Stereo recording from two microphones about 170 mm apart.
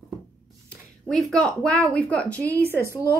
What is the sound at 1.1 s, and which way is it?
Speech, 5° left (ahead or behind).